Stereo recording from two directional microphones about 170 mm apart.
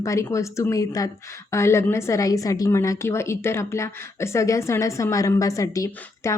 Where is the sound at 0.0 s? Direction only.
20° left (ahead or behind).